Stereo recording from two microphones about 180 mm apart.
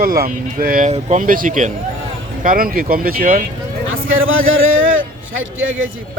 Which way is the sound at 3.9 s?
90° right.